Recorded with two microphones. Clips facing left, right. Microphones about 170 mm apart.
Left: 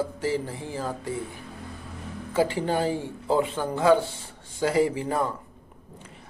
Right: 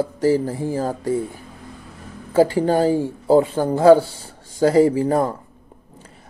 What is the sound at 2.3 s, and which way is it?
Speech, 40° right (ahead or behind).